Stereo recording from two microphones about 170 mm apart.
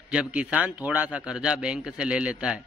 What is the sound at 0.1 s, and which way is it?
A man's voice, 5° right (ahead or behind).